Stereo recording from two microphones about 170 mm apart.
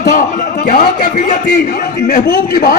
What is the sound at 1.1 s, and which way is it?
A man's voice, 45° left (ahead or behind).